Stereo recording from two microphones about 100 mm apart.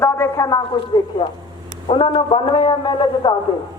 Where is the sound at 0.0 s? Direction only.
25° left (ahead or behind).